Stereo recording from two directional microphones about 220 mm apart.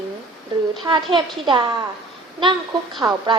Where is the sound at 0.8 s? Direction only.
20° right (ahead or behind).